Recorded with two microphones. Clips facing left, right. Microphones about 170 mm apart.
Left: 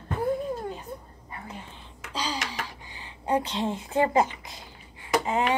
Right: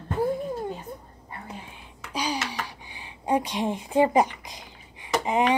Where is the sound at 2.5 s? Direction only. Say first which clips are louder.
Right 1 dB; 15° right (ahead or behind).